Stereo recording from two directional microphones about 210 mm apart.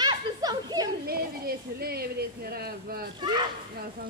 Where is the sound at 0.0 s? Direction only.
20° right (ahead or behind).